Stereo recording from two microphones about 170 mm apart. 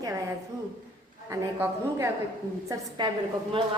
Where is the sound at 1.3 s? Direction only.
15° right (ahead or behind).